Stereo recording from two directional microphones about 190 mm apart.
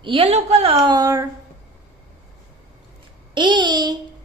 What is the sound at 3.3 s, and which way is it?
Speech, 25° right (ahead or behind).